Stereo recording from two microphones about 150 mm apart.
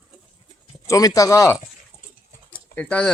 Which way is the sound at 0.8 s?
20° left (ahead or behind).